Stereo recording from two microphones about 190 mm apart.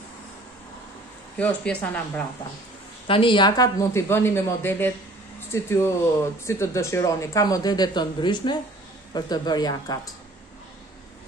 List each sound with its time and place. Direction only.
1.4 s speech: 5° left (ahead or behind)
3.1 s speech: 25° left (ahead or behind)